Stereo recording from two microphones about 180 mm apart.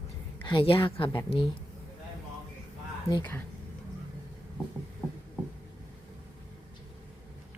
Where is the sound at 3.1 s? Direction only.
15° left (ahead or behind).